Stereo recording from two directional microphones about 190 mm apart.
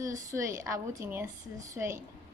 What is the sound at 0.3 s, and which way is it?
A woman's voice, 15° right (ahead or behind).